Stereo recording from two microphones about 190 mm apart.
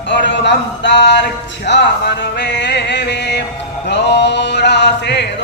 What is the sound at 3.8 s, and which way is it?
Male singing, 65° left (ahead or behind).